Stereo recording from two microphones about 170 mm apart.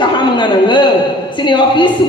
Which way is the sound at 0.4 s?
25° left (ahead or behind).